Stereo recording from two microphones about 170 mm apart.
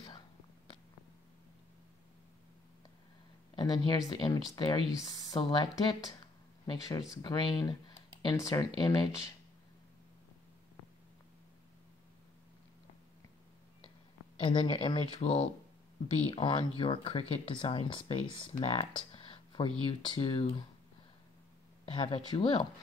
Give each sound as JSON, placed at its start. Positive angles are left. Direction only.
{"t": 3.5, "sound": "speech", "side_deg": 25}
{"t": 14.4, "sound": "speech", "side_deg": 30}
{"t": 21.8, "sound": "speech", "side_deg": 30}